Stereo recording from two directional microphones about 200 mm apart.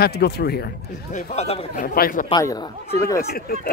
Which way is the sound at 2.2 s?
20° left (ahead or behind).